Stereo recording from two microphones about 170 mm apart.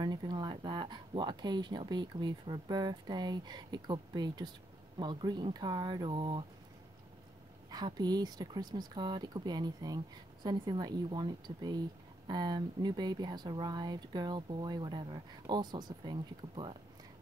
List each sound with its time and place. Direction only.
0.0 s speech: 25° right (ahead or behind)
7.7 s speech: 25° right (ahead or behind)